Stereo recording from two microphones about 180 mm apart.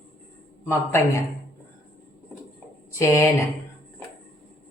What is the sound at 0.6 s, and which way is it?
Speech, 15° left (ahead or behind).